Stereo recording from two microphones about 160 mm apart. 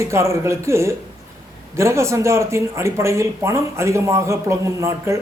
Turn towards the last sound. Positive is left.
turn(degrees=-20)  # may be behind; listen again after turning